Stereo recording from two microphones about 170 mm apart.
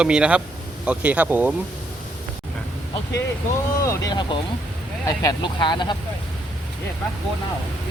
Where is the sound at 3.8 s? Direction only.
20° left (ahead or behind).